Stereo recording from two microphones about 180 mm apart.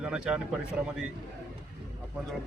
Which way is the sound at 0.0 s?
5° right (ahead or behind).